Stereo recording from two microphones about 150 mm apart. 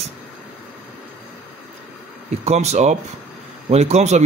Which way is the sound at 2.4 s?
45° right (ahead or behind).